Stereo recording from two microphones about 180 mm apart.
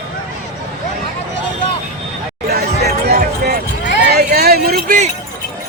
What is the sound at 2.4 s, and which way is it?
Music, 60° right (ahead or behind).